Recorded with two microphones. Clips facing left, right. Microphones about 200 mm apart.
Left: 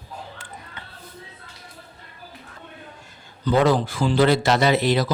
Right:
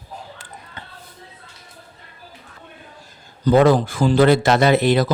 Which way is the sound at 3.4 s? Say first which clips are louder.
Right 5 dB; 50° right (ahead or behind).